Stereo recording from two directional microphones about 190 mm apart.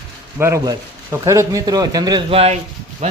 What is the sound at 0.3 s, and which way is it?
Speech, 15° right (ahead or behind).